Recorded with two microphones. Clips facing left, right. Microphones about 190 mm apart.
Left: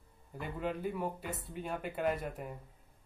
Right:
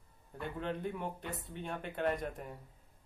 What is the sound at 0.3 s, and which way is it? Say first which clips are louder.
Speech: left 1 dB; 5° left (ahead or behind).